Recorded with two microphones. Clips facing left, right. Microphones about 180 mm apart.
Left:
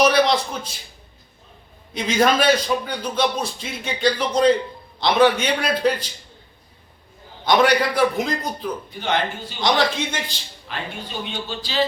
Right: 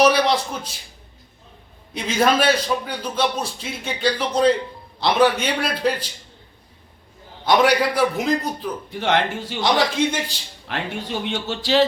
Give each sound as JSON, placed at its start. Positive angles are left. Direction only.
{"t": 0.0, "sound": "a sound", "side_deg": -10}
{"t": 2.0, "sound": "a man's voice", "side_deg": -5}
{"t": 7.4, "sound": "a man's voice", "side_deg": -5}
{"t": 8.9, "sound": "speech", "side_deg": -85}
{"t": 9.6, "sound": "a man's voice", "side_deg": -5}
{"t": 10.7, "sound": "speech", "side_deg": -75}